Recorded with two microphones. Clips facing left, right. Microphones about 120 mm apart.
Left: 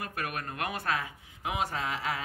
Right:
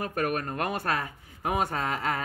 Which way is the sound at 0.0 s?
40° right (ahead or behind).